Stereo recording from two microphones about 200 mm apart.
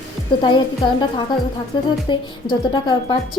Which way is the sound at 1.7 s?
20° left (ahead or behind).